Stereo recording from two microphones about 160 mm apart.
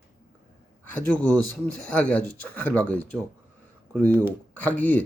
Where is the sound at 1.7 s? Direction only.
5° left (ahead or behind).